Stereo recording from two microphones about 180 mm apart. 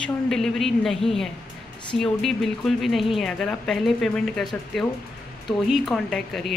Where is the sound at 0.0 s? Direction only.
Centre (ahead or behind).